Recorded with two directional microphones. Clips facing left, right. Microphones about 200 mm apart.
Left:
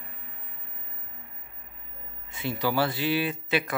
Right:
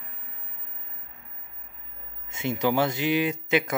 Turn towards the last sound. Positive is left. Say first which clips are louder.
# right 3 dB
turn(degrees=-20)  # may be behind; listen again after turning